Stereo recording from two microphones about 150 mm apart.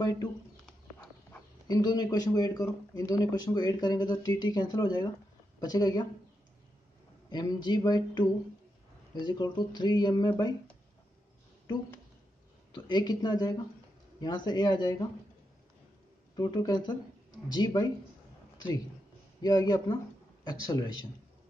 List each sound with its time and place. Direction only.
0.0 s speech: 25° left (ahead or behind)
1.7 s a man's voice: 25° left (ahead or behind)
7.2 s a man's voice: 30° left (ahead or behind)
12.7 s a man's voice: 30° left (ahead or behind)
16.3 s a man's voice: 25° left (ahead or behind)
19.4 s a man's voice: 25° left (ahead or behind)